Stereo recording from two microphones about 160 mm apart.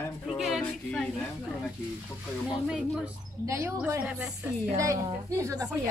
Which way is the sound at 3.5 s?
20° right (ahead or behind).